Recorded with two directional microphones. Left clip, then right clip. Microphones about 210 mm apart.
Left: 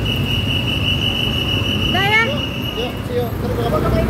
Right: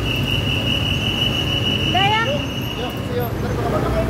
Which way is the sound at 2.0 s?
50° left (ahead or behind).